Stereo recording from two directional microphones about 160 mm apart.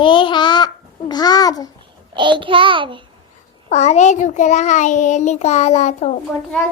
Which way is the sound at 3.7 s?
45° left (ahead or behind).